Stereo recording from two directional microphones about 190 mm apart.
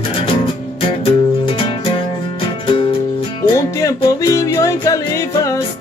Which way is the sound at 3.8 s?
15° left (ahead or behind).